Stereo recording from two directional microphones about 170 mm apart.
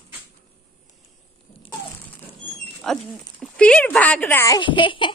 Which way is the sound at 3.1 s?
5° left (ahead or behind).